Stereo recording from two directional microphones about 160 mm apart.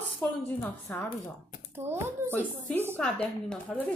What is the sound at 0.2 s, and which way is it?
Speech, 10° left (ahead or behind).